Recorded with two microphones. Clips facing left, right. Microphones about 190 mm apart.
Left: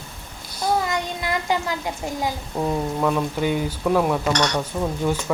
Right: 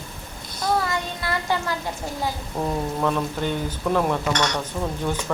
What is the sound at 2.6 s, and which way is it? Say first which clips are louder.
Speech: left 2 dB; 5° left (ahead or behind).